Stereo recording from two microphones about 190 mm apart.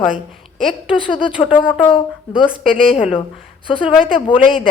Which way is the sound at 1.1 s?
25° left (ahead or behind).